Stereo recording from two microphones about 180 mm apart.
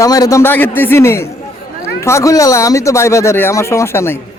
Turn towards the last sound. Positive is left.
turn(degrees=15)  # may be behind; listen again after turning